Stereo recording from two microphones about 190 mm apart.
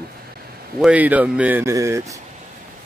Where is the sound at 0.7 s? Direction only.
5° right (ahead or behind).